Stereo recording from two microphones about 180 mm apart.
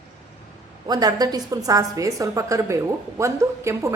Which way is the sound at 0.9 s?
20° right (ahead or behind).